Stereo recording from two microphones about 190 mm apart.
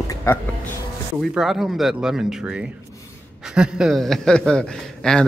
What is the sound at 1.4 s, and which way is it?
A man's voice, centre (ahead or behind).